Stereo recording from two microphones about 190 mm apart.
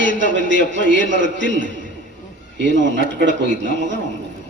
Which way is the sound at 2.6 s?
70° right (ahead or behind).